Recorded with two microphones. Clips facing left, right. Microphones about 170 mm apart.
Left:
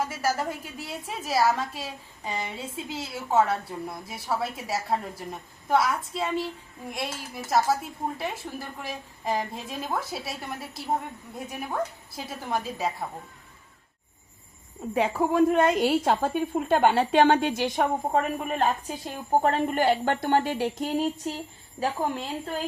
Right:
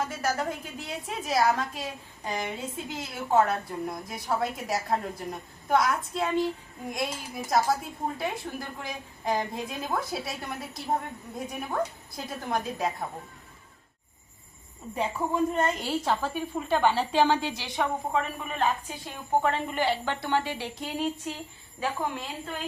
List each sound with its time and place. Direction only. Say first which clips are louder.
0.0 s a woman's voice: left 1 dB; 5° left (ahead or behind)
14.9 s a woman's voice: left 5 dB; 70° left (ahead or behind); by 22.6 s 35° left (ahead or behind)